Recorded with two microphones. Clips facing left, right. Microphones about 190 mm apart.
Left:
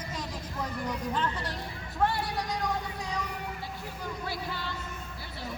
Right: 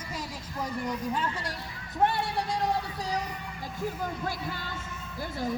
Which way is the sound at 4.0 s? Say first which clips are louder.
Right 3 dB; 50° right (ahead or behind).